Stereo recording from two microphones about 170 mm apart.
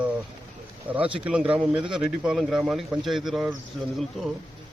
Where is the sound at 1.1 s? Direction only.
5° right (ahead or behind).